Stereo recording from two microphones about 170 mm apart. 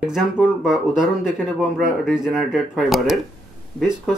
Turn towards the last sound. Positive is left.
turn(degrees=0)  # may be behind; listen again after turning